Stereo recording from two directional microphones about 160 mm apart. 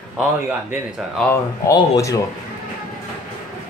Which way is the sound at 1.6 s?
20° left (ahead or behind).